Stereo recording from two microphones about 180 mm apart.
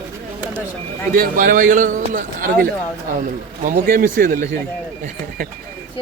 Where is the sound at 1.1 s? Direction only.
50° right (ahead or behind).